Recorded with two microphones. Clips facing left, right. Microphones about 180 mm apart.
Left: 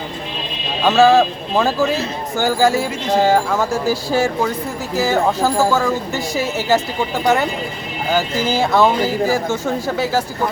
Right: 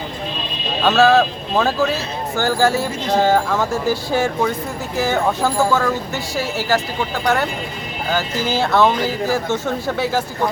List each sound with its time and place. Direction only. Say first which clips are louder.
0.8 s speech: left 2 dB; 10° left (ahead or behind)
6.3 s a woman's voice: left 2 dB; 20° left (ahead or behind)
8.1 s speech: left 2 dB; 10° left (ahead or behind)